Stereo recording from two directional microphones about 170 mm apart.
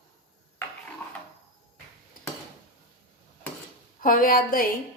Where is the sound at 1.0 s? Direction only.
15° left (ahead or behind).